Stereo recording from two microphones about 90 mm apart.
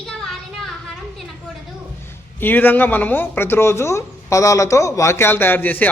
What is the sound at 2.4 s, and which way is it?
Speech, 20° left (ahead or behind).